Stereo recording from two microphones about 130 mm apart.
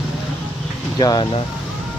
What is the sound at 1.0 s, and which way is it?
Speech, 30° left (ahead or behind).